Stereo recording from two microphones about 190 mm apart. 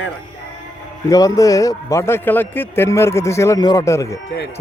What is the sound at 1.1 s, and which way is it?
A man's voice, 20° left (ahead or behind).